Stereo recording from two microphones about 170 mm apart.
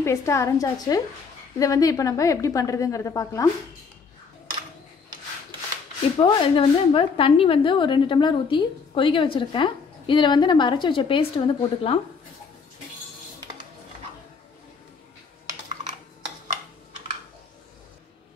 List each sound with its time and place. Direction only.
0.0 s a woman's voice: 15° left (ahead or behind)
6.2 s speech: 30° left (ahead or behind)